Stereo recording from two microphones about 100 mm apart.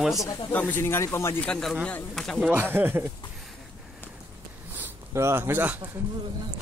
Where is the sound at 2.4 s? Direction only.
20° right (ahead or behind).